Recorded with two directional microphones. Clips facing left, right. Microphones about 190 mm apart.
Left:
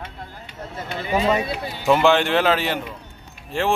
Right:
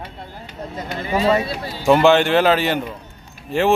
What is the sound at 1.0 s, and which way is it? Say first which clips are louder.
Speech: right 2 dB; 15° left (ahead or behind).